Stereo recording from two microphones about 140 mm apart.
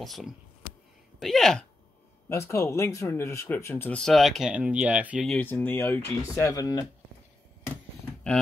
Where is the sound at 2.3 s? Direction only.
15° left (ahead or behind).